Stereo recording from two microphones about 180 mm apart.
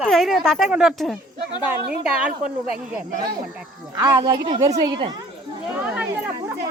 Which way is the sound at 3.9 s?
20° right (ahead or behind).